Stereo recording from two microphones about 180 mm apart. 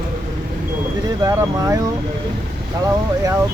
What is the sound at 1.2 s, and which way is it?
Speech, 20° right (ahead or behind).